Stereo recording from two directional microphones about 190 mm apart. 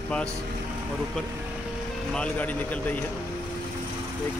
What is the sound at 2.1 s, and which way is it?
Speech, 5° left (ahead or behind).